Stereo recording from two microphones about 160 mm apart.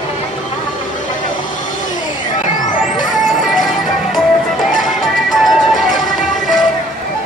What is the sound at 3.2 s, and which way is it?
Music, centre (ahead or behind).